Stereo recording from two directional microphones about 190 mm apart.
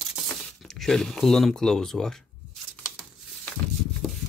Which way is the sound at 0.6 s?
Centre (ahead or behind).